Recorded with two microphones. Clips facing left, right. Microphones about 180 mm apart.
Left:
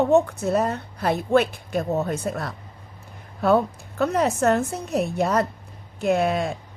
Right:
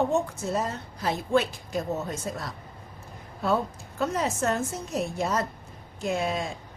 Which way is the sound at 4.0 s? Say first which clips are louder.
Left 6 dB; 60° left (ahead or behind).